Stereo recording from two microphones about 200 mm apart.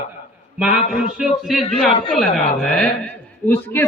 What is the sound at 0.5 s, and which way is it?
A man's voice, 5° right (ahead or behind).